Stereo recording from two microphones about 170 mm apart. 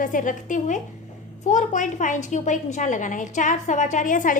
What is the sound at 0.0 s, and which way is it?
A woman's voice, 50° left (ahead or behind).